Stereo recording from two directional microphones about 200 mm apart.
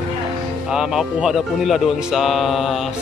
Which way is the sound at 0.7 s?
Centre (ahead or behind).